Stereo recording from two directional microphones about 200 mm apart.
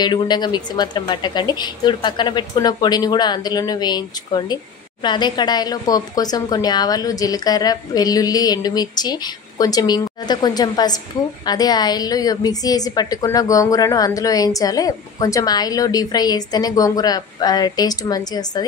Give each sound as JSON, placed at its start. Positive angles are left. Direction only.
{"t": 0.0, "sound": "a woman's voice", "side_deg": 20}